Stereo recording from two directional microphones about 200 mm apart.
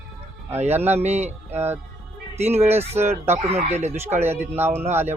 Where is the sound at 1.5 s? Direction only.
10° right (ahead or behind).